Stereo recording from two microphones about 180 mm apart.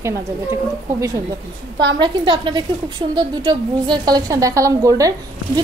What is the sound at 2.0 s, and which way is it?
A woman's voice, 25° right (ahead or behind).